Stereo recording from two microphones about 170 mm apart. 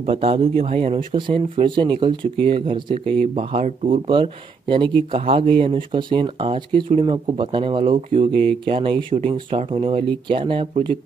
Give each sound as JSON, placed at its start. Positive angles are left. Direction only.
{"t": 0.0, "sound": "speech", "side_deg": -35}